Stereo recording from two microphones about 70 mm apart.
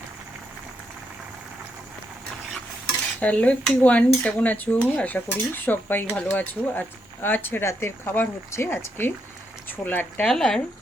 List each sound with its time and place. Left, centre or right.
3.2 s speech: left
10.2 s speech: centre